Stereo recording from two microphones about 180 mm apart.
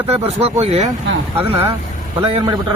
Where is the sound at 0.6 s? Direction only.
35° right (ahead or behind).